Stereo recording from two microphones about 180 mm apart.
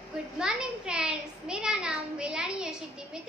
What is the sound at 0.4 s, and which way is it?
A child's voice, 5° right (ahead or behind).